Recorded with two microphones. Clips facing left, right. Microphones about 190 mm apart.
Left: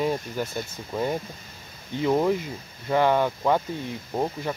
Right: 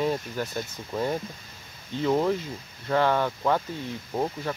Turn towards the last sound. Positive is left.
turn(degrees=15)  # may be behind; listen again after turning